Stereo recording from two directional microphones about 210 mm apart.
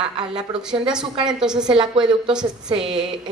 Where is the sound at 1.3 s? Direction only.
5° right (ahead or behind).